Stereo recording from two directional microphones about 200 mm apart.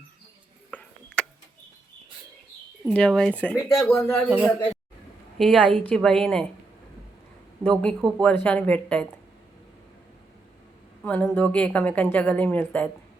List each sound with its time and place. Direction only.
0.7 s tick-tock: 5° left (ahead or behind)
2.8 s speech: 5° left (ahead or behind)
5.4 s speech: 5° left (ahead or behind)
7.6 s a woman's voice: 5° left (ahead or behind)
11.0 s a woman's voice: 10° left (ahead or behind)